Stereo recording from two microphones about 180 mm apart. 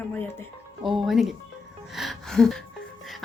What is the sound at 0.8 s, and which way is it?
Speech, centre (ahead or behind).